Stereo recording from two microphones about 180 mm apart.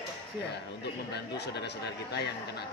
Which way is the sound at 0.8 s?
70° left (ahead or behind).